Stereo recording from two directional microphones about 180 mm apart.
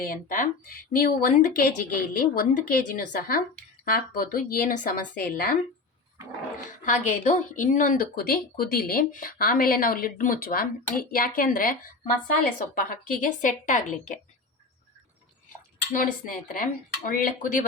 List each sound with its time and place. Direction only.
0.0 s speech: 50° left (ahead or behind)
6.8 s speech: 45° left (ahead or behind)
15.9 s speech: 50° left (ahead or behind)